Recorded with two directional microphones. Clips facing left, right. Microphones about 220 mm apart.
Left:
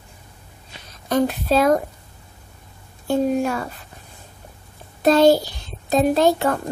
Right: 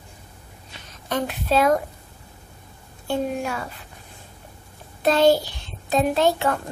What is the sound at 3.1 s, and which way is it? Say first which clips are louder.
Speech: left 6 dB; 40° left (ahead or behind).